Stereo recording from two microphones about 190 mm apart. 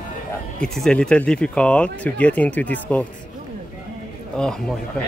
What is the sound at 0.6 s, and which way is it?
Speech, 5° left (ahead or behind).